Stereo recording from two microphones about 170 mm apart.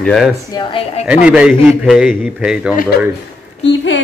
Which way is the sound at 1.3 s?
5° right (ahead or behind).